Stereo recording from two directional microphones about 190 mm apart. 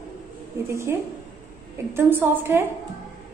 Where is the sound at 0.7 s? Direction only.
15° right (ahead or behind).